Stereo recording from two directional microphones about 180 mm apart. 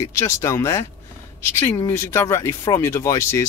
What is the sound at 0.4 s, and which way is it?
Speech, 15° left (ahead or behind).